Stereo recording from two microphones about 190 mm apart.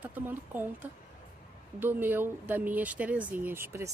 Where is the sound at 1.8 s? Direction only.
10° right (ahead or behind).